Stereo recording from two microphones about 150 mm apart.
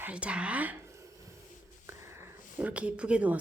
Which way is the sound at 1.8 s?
15° right (ahead or behind).